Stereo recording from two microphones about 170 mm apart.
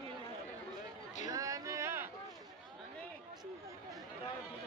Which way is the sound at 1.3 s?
20° right (ahead or behind).